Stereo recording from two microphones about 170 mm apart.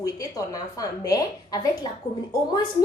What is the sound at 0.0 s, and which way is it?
A woman's voice, 20° left (ahead or behind).